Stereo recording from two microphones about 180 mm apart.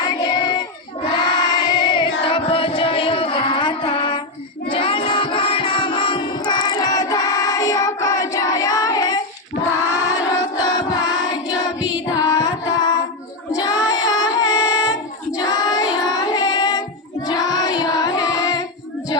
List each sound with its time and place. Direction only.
0.0 s child singing: 25° left (ahead or behind)
1.0 s choir: 25° left (ahead or behind)
4.7 s music: 30° left (ahead or behind)
9.9 s choir: 20° left (ahead or behind)
11.5 s music: 20° left (ahead or behind)
12.1 s carnatic music: 20° left (ahead or behind)
13.6 s child singing: 20° left (ahead or behind)